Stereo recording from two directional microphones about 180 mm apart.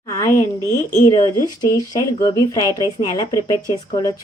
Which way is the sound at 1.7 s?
20° left (ahead or behind).